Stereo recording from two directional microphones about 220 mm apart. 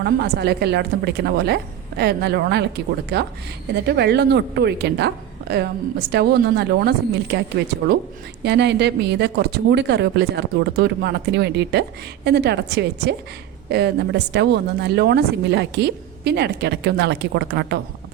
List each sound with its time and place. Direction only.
0.0 s speech: 50° right (ahead or behind)
8.4 s speech: 50° right (ahead or behind)